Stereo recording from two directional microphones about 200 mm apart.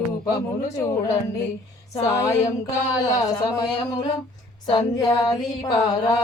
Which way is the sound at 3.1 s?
20° left (ahead or behind).